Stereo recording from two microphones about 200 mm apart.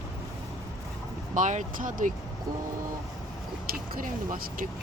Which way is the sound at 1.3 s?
40° right (ahead or behind).